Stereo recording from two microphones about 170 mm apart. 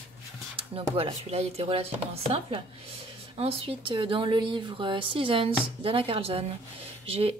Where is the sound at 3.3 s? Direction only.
35° right (ahead or behind).